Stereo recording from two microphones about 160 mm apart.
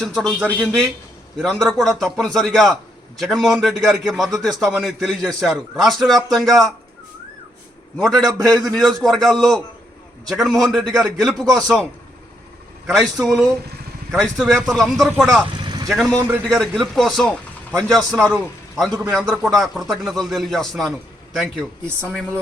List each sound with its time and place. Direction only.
0.0 s speech: centre (ahead or behind)
8.0 s speech: 5° left (ahead or behind)
12.9 s speech: centre (ahead or behind)
15.6 s vehicle: 25° right (ahead or behind)
15.9 s speech: centre (ahead or behind)
16.1 s a man's voice: 15° right (ahead or behind)
16.4 s speech: centre (ahead or behind)